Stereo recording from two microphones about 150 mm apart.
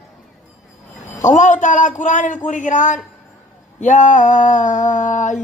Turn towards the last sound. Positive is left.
turn(degrees=55)  # may be behind; listen again after turning